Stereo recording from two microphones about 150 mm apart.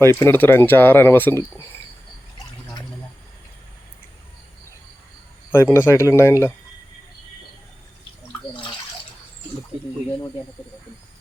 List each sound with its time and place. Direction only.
0.0 s speech: 15° left (ahead or behind)
5.5 s speech: 15° left (ahead or behind)